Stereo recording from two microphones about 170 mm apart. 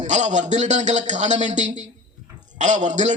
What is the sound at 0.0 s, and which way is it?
A man's voice, 45° right (ahead or behind).